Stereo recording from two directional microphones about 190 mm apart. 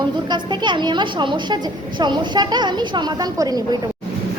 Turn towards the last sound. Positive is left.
turn(degrees=-20)  # may be behind; listen again after turning